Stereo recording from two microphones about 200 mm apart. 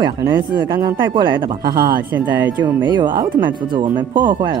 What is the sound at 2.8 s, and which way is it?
Speech, 20° right (ahead or behind).